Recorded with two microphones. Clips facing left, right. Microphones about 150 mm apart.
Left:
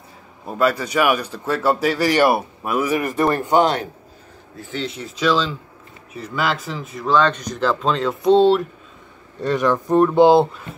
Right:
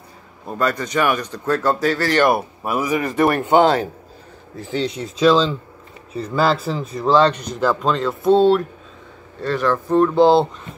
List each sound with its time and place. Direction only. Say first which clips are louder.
0.5 s a man's voice: left 2 dB; 5° left (ahead or behind)
2.7 s speech: even; 10° right (ahead or behind)
4.6 s speech: right 5 dB; 40° right (ahead or behind)
7.6 s speech: right 1 dB; centre (ahead or behind)
8.1 s a man's voice: even; 20° left (ahead or behind)
9.4 s speech: left 1 dB; 20° left (ahead or behind)